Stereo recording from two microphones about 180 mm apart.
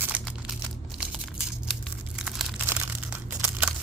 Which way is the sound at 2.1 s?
Centre (ahead or behind).